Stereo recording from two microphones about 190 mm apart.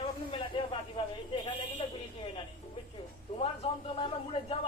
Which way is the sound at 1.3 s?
25° left (ahead or behind).